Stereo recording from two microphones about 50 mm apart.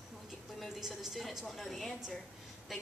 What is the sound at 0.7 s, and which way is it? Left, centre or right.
A woman's voice, centre.